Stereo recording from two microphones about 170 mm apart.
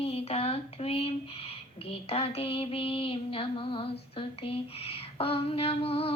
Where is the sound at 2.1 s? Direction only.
35° left (ahead or behind).